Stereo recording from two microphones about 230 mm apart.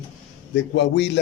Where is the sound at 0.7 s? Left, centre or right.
Left.